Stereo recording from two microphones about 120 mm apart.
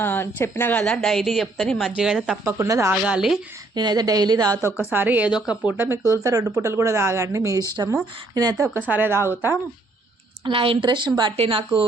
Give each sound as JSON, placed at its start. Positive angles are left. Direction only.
{"t": 0.0, "sound": "a woman's voice", "side_deg": 20}
{"t": 2.4, "sound": "speech", "side_deg": -25}
{"t": 2.9, "sound": "speech", "side_deg": -5}
{"t": 3.8, "sound": "a woman's voice", "side_deg": -35}
{"t": 4.8, "sound": "speech", "side_deg": -15}
{"t": 5.7, "sound": "a woman's voice", "side_deg": -20}
{"t": 8.7, "sound": "speech", "side_deg": -15}
{"t": 10.4, "sound": "a woman's voice", "side_deg": -50}